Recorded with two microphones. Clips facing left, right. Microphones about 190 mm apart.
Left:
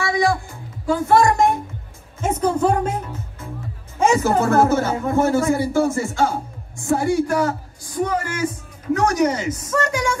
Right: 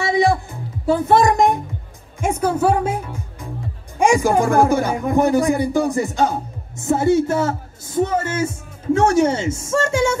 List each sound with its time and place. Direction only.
0.0 s music: 20° right (ahead or behind)
2.1 s a woman's voice: 10° right (ahead or behind); by 10.1 s 25° right (ahead or behind)